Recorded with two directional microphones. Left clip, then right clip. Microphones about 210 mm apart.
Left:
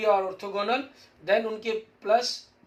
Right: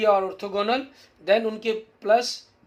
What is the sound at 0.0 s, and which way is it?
Speech, 50° right (ahead or behind).